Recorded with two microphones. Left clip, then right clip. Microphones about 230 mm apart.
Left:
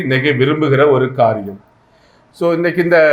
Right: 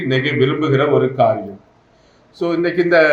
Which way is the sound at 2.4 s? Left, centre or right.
Left.